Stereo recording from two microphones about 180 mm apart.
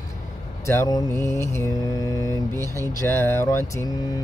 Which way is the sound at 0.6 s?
20° left (ahead or behind).